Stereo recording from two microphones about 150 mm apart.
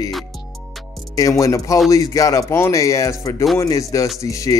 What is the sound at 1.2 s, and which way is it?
Speech, 20° left (ahead or behind).